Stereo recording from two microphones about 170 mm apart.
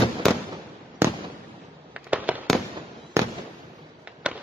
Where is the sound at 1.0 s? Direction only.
15° right (ahead or behind).